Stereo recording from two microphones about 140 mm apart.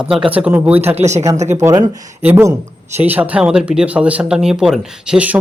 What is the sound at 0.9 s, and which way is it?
Speech, 55° right (ahead or behind).